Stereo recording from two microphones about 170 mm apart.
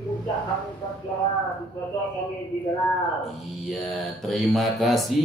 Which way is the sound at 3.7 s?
Centre (ahead or behind).